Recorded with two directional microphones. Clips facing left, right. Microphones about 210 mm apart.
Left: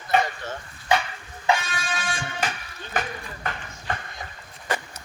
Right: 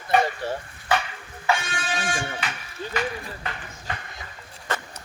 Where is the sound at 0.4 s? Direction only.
35° right (ahead or behind).